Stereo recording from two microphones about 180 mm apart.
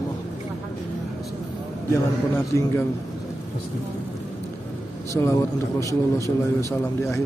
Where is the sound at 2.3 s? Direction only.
15° left (ahead or behind).